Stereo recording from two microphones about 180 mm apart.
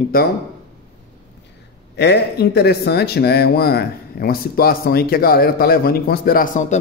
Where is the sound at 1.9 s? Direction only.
65° left (ahead or behind).